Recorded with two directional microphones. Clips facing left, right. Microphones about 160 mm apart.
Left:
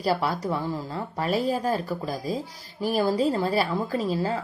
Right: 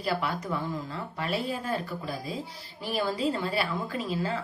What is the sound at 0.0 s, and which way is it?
Speech, 35° left (ahead or behind).